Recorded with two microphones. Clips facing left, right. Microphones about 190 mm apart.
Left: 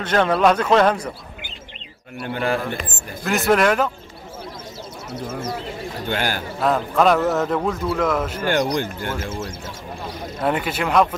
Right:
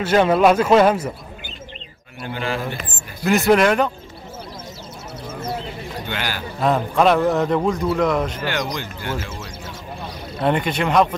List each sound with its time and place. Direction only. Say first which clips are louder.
0.0 s speech: right 2 dB; 10° right (ahead or behind)
2.2 s speech: left 3 dB; 55° left (ahead or behind)
3.3 s a man's voice: right 2 dB; centre (ahead or behind)
6.0 s speech: left 5 dB; 45° left (ahead or behind)
6.6 s a man's voice: right 1 dB; centre (ahead or behind)
8.5 s speech: left 5 dB; 50° left (ahead or behind)
10.4 s a man's voice: right 2 dB; 5° left (ahead or behind)